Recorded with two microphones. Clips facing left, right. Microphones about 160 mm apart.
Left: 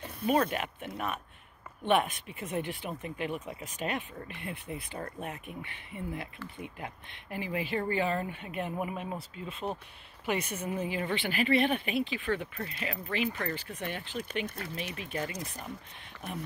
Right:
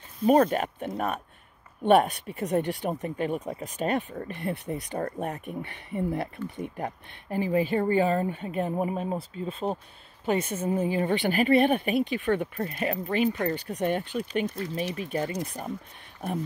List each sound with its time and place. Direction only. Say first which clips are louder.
0.3 s speech: right 7 dB; 40° right (ahead or behind)